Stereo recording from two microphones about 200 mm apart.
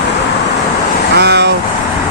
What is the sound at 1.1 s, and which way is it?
Vehicle, 55° right (ahead or behind).